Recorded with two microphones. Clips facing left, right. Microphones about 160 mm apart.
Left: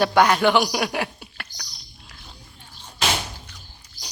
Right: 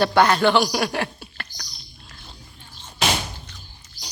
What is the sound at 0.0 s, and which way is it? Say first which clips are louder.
Speech: even; 10° left (ahead or behind).